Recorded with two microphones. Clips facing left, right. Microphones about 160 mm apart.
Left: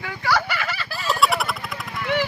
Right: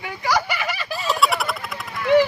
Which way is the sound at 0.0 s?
15° right (ahead or behind).